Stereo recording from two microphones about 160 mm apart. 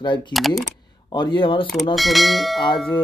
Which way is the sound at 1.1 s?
30° left (ahead or behind).